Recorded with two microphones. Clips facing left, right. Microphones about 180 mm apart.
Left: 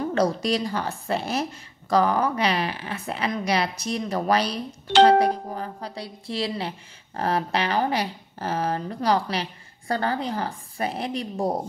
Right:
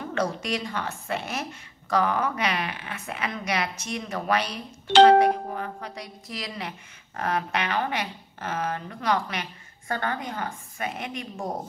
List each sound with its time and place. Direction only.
0.0 s speech: 35° left (ahead or behind)